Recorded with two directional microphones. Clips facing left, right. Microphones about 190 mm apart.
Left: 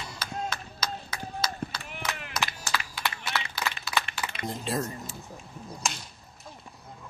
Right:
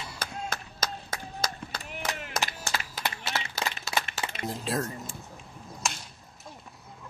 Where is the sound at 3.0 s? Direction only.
40° right (ahead or behind).